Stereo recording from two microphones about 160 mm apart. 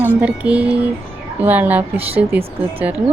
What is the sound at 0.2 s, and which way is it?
Speech, 10° right (ahead or behind).